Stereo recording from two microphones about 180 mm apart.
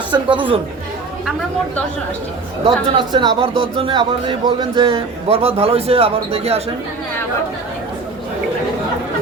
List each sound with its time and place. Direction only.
0.1 s speech: 25° right (ahead or behind)
2.6 s a man's voice: 25° right (ahead or behind)